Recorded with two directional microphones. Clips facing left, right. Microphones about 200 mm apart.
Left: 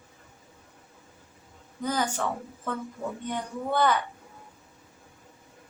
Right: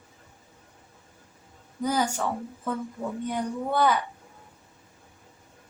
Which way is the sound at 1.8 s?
10° right (ahead or behind).